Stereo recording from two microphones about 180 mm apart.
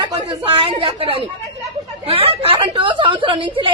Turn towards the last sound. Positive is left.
turn(degrees=-30)  # may be behind; listen again after turning